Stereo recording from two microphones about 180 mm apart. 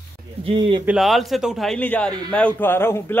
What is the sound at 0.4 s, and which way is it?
Speech, 30° right (ahead or behind).